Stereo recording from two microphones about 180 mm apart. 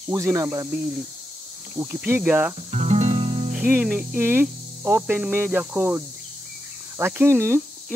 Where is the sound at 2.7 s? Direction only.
35° right (ahead or behind).